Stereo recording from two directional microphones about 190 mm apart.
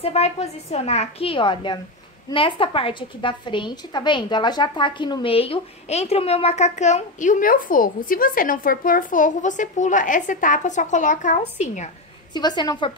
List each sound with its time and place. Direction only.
0.0 s a woman's voice: 35° left (ahead or behind)
12.4 s a woman's voice: 20° left (ahead or behind)